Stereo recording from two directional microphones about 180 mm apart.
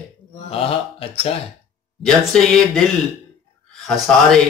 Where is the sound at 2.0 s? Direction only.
Centre (ahead or behind).